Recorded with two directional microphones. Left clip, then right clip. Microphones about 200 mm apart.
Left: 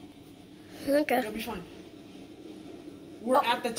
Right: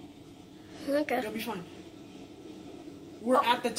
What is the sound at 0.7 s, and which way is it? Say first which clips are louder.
Speech: left 3 dB; 20° left (ahead or behind).